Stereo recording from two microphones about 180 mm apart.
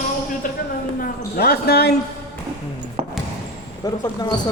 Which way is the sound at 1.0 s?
60° left (ahead or behind).